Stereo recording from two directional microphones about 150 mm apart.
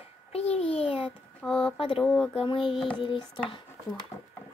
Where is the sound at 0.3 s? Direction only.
40° left (ahead or behind).